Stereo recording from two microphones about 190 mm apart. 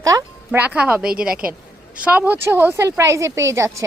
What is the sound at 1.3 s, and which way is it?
Speech, 50° right (ahead or behind).